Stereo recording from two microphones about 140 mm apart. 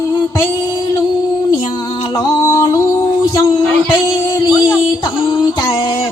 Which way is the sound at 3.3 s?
30° left (ahead or behind).